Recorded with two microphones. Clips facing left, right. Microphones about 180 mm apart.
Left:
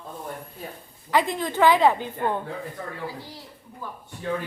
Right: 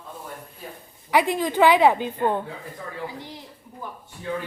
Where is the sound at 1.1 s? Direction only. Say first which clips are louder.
Right 2 dB; 15° right (ahead or behind).